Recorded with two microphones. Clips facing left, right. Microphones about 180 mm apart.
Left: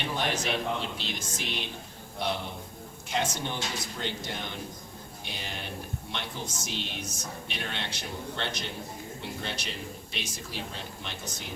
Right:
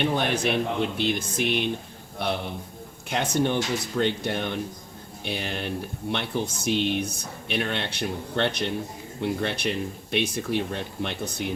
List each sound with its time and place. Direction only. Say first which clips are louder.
0.0 s a man's voice: right 7 dB; 55° right (ahead or behind)